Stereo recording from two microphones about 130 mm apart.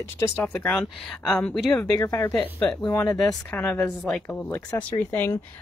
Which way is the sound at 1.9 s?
20° left (ahead or behind).